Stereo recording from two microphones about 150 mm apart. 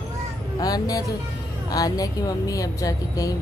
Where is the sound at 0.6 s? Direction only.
25° left (ahead or behind).